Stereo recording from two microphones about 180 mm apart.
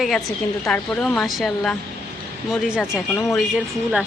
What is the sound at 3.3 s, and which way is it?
Speech, 5° right (ahead or behind).